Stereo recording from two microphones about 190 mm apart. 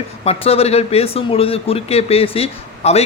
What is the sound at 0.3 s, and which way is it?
Speech, 30° left (ahead or behind).